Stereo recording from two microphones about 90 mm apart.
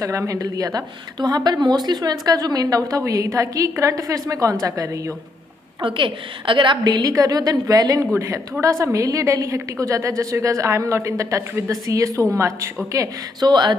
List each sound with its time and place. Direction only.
0.0 s a woman's voice: 35° right (ahead or behind)
5.8 s a woman's voice: 70° right (ahead or behind); by 13.5 s 35° right (ahead or behind)
13.5 s a sound: 55° right (ahead or behind)